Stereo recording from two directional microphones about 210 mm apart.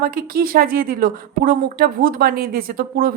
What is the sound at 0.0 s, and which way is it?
Speech, 45° right (ahead or behind).